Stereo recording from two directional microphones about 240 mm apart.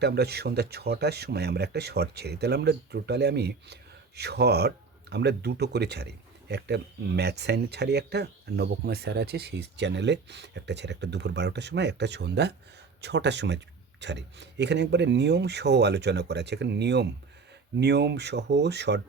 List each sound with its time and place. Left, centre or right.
0.0 s speech: right